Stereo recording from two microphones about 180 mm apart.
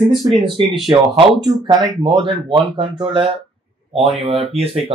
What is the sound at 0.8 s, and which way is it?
Speech, 30° right (ahead or behind).